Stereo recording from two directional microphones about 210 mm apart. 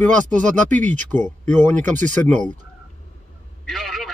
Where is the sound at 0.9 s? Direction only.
10° left (ahead or behind).